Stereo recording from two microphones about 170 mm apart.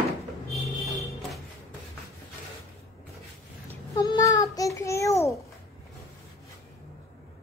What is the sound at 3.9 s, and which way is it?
Child singing, 20° left (ahead or behind).